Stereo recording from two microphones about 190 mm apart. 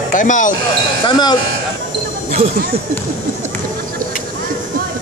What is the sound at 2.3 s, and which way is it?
Speech, 45° right (ahead or behind).